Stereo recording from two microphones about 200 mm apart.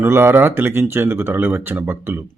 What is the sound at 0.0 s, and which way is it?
Speech, 10° right (ahead or behind).